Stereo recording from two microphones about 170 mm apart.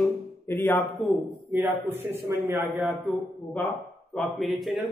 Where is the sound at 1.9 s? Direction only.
15° right (ahead or behind).